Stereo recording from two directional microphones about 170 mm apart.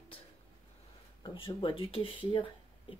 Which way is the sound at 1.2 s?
30° left (ahead or behind).